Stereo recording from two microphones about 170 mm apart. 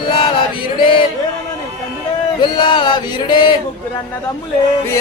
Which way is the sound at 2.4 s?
25° left (ahead or behind).